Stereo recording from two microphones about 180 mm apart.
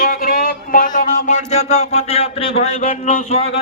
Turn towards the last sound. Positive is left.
turn(degrees=40)  # may be behind; listen again after turning